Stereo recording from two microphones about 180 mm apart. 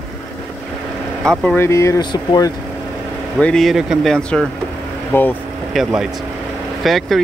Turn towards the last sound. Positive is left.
turn(degrees=0)  # may be behind; listen again after turning